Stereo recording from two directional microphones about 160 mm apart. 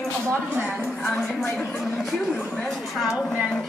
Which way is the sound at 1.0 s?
10° left (ahead or behind).